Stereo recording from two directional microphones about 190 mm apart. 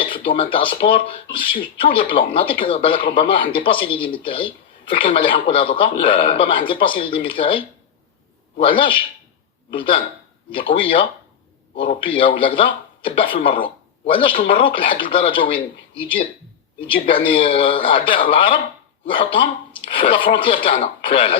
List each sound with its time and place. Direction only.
0.0 s speech: 25° left (ahead or behind)